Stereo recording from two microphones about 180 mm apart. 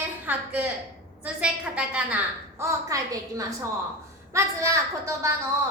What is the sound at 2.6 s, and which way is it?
A woman's voice, 15° right (ahead or behind).